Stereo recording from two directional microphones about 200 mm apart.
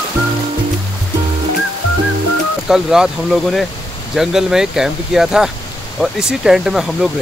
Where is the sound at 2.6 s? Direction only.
5° right (ahead or behind).